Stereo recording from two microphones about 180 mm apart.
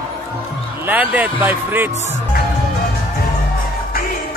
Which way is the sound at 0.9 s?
10° right (ahead or behind).